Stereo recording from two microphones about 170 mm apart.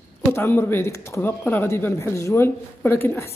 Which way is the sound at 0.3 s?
15° left (ahead or behind).